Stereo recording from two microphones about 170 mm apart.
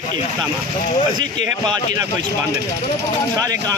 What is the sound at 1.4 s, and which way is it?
Speech, 25° right (ahead or behind).